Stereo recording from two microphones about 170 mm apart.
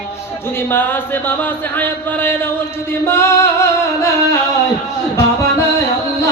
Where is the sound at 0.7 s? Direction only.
10° left (ahead or behind).